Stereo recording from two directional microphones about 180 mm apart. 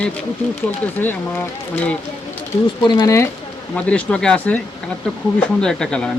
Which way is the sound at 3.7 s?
5° left (ahead or behind).